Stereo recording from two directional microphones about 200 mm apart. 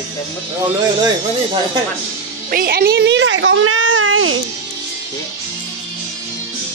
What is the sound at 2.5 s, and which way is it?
Speech, 50° right (ahead or behind).